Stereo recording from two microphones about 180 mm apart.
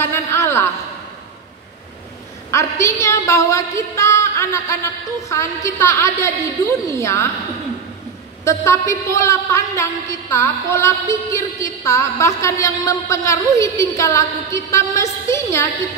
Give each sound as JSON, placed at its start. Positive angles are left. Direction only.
{"t": 0.0, "sound": "a sound", "side_deg": 15}
{"t": 2.5, "sound": "a woman's voice", "side_deg": 15}
{"t": 8.5, "sound": "a woman's voice", "side_deg": 15}